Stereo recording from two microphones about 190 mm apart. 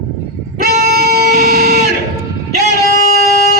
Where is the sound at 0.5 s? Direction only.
55° right (ahead or behind).